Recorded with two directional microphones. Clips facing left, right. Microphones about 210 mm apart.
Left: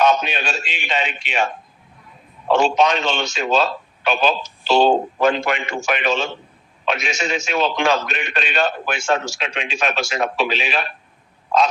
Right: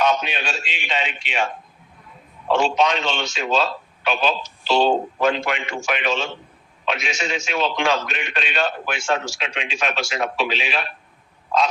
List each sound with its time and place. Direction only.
0.0 s a man's voice: 45° left (ahead or behind)
2.5 s a man's voice: 45° left (ahead or behind)